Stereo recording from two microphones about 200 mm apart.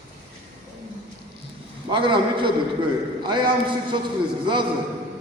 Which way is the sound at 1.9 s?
25° right (ahead or behind).